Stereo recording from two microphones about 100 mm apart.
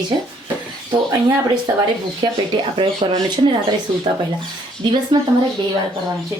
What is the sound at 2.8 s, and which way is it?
Speech, 50° right (ahead or behind).